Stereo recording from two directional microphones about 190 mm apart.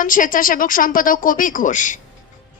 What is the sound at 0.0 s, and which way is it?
Speech, 45° left (ahead or behind).